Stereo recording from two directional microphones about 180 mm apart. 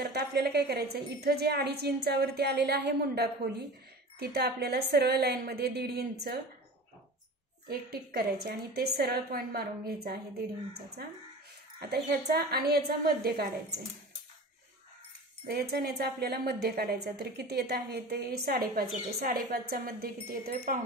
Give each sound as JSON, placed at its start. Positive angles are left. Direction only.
{"t": 0.0, "sound": "a woman's voice", "side_deg": -60}
{"t": 7.7, "sound": "a woman's voice", "side_deg": -55}
{"t": 15.5, "sound": "a woman's voice", "side_deg": -65}